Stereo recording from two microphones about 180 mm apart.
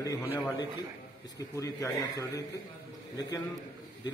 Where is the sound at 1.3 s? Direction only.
20° left (ahead or behind).